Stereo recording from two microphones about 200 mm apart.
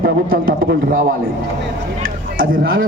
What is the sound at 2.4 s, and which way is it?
Speech, 45° right (ahead or behind).